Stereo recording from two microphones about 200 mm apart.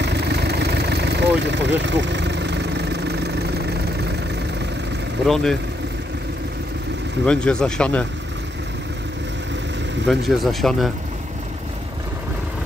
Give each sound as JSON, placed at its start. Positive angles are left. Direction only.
{"t": 0.0, "sound": "vehicle", "side_deg": -55}
{"t": 5.2, "sound": "speech", "side_deg": 0}
{"t": 7.2, "sound": "speech", "side_deg": 5}
{"t": 10.0, "sound": "speech", "side_deg": 0}